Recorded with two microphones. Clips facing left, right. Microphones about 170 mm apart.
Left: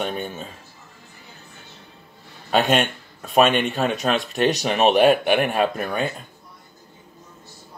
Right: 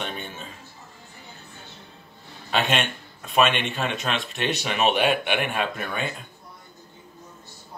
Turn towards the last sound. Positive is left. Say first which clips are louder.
# left 6 dB
turn(degrees=40)  # may be behind; listen again after turning